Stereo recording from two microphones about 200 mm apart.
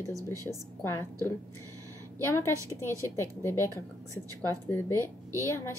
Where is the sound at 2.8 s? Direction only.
15° right (ahead or behind).